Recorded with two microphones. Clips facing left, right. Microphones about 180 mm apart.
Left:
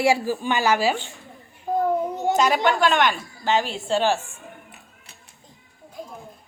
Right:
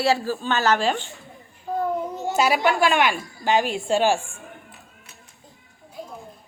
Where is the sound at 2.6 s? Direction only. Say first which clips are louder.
Even; 10° right (ahead or behind).